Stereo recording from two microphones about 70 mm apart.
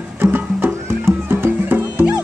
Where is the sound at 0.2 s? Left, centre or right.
Right.